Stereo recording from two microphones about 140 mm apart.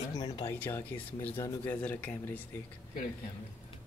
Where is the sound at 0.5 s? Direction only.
15° left (ahead or behind).